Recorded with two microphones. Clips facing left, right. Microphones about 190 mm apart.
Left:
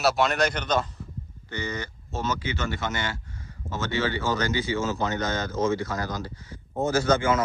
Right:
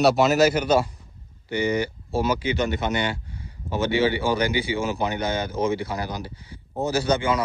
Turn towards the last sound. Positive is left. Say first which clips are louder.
# even
turn(degrees=-15)  # may be behind; listen again after turning